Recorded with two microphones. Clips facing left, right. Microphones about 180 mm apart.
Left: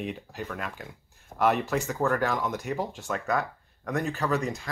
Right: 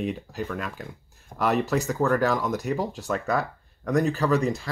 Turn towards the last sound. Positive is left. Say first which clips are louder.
# right 5 dB
turn(degrees=-35)  # may be behind; listen again after turning